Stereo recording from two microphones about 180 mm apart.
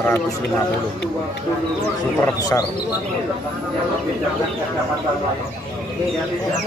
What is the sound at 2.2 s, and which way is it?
Speech, 20° left (ahead or behind).